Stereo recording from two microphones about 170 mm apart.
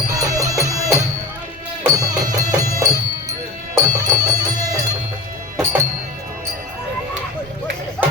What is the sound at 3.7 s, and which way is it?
Music, 20° right (ahead or behind).